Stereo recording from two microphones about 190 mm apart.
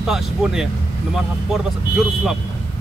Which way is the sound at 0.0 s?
Centre (ahead or behind).